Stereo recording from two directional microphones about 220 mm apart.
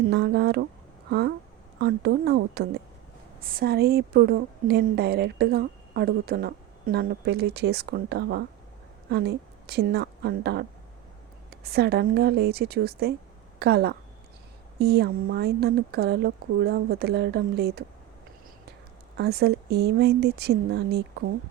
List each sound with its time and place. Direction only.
0.1 s a woman's voice: 50° right (ahead or behind)
1.8 s a woman's voice: 45° right (ahead or behind)
19.1 s a woman's voice: 45° right (ahead or behind)